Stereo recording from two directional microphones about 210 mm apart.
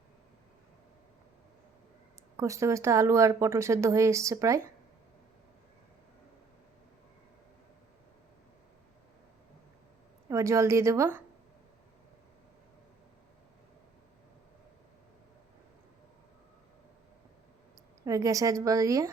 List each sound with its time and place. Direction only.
2.3 s speech: 15° right (ahead or behind)
10.2 s speech: 15° right (ahead or behind)
18.0 s speech: 15° right (ahead or behind)